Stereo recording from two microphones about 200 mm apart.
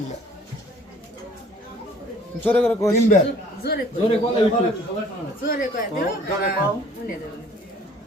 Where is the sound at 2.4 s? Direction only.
10° left (ahead or behind).